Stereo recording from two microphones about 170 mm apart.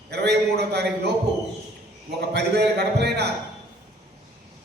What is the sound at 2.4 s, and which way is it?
Speech, 75° right (ahead or behind).